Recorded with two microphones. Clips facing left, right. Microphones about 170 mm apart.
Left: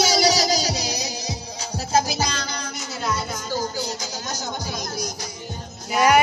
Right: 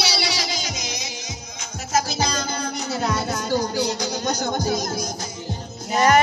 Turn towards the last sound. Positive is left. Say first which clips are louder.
# even
turn(degrees=10)  # may be behind; listen again after turning